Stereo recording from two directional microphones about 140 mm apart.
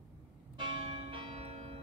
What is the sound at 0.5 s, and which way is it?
Church bell, 40° right (ahead or behind).